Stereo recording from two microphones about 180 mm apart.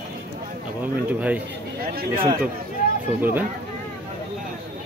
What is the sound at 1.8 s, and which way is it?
Speech, 55° right (ahead or behind).